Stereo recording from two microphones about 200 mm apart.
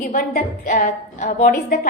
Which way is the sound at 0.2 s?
45° left (ahead or behind).